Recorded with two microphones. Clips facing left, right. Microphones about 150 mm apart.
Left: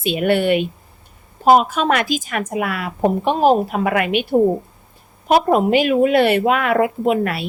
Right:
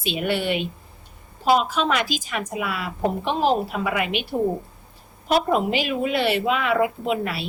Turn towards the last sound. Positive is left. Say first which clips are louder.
# left 7 dB
turn(degrees=55)  # may be behind; listen again after turning